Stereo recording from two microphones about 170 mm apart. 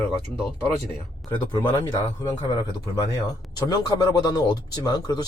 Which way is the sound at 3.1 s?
20° left (ahead or behind).